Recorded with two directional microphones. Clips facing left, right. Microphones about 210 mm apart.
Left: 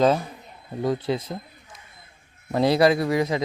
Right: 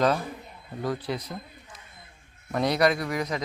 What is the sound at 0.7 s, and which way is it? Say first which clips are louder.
Speech: left 5 dB; 25° left (ahead or behind).